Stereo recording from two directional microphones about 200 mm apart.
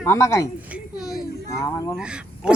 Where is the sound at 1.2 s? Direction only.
15° left (ahead or behind).